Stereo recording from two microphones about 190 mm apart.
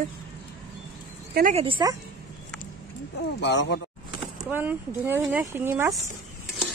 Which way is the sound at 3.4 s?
65° left (ahead or behind).